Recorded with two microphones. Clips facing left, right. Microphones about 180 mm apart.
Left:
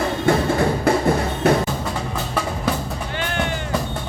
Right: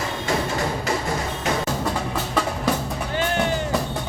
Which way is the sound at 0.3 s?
55° left (ahead or behind).